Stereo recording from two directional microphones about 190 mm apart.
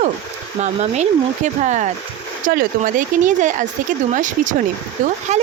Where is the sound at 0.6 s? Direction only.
35° right (ahead or behind).